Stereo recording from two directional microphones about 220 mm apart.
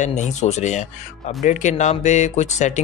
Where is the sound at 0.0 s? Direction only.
30° left (ahead or behind).